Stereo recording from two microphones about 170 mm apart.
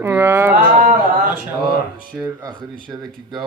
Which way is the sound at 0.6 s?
50° right (ahead or behind).